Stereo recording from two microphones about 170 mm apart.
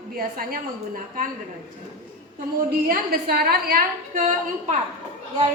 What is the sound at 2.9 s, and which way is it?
A woman's voice, 65° right (ahead or behind).